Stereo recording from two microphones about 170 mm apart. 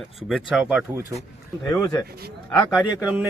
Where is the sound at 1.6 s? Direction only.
20° left (ahead or behind).